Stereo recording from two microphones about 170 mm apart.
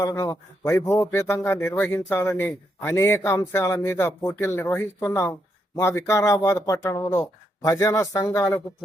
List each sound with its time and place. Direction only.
0.0 s a man's voice: 20° left (ahead or behind)